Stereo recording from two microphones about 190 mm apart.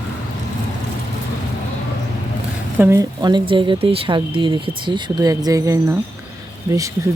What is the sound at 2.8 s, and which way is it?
Speech, 15° right (ahead or behind).